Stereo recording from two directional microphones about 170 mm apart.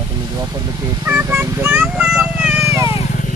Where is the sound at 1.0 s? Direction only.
15° right (ahead or behind).